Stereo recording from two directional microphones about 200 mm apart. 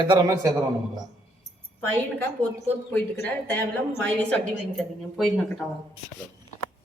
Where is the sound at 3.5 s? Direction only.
10° left (ahead or behind).